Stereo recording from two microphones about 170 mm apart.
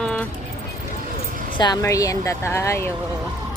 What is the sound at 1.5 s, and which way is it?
A woman's voice, 25° left (ahead or behind).